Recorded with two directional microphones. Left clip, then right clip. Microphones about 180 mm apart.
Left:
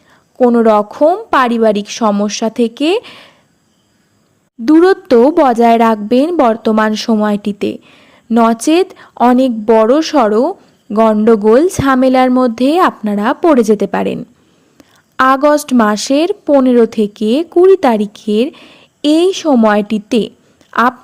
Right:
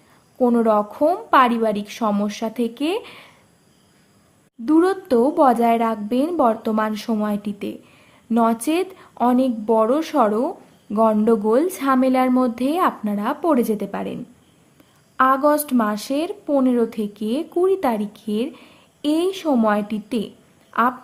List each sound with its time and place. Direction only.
0.3 s a woman's voice: 30° left (ahead or behind)
4.6 s a woman's voice: 40° left (ahead or behind)